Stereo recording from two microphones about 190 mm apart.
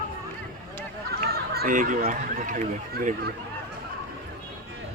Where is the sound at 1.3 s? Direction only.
50° right (ahead or behind).